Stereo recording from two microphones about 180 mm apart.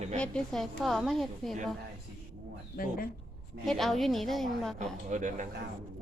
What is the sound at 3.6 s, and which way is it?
A woman's voice, centre (ahead or behind).